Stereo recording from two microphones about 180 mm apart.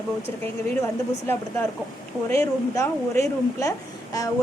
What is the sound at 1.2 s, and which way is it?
A woman's voice, 10° left (ahead or behind).